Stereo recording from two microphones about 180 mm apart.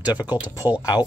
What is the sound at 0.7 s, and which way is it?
Speech, 20° left (ahead or behind).